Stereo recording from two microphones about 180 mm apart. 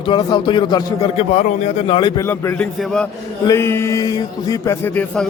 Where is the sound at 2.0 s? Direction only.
25° left (ahead or behind).